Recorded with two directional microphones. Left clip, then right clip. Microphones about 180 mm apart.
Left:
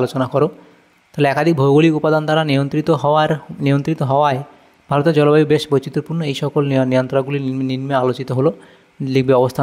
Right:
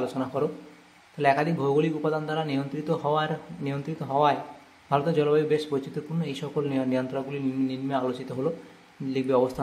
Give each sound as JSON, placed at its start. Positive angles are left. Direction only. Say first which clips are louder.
{"t": 0.0, "sound": "speech", "louder": "left 11 dB", "side_deg": 50}